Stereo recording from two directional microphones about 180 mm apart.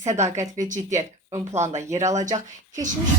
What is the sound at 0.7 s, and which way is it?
Speech, 40° right (ahead or behind).